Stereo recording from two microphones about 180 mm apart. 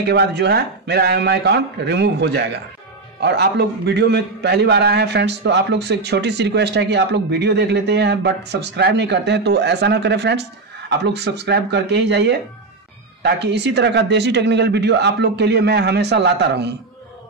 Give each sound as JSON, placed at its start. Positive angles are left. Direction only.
{"t": 0.1, "sound": "a man's voice", "side_deg": -65}